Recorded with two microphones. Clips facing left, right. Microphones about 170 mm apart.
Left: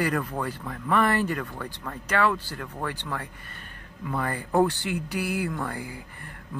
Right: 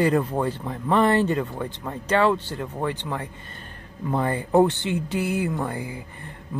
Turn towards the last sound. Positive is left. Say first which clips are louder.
# right 4 dB
turn(degrees=-20)  # may be behind; listen again after turning